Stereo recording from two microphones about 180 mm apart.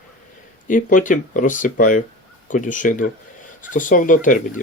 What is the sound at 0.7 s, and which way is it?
Speech, 45° left (ahead or behind).